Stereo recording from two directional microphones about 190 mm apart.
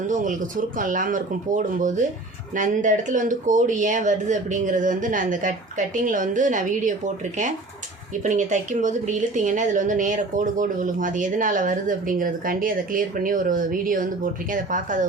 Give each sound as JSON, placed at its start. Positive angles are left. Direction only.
{"t": 0.1, "sound": "a woman's voice", "side_deg": -45}